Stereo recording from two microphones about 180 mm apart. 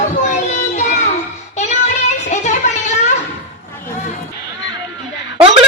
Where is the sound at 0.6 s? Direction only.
45° left (ahead or behind).